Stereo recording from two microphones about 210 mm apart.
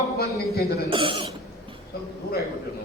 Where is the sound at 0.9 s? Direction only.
25° right (ahead or behind).